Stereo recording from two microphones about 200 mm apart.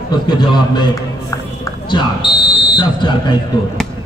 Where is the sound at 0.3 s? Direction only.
20° left (ahead or behind).